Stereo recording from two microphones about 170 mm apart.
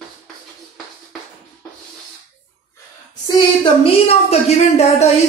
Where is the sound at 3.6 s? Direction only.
35° left (ahead or behind).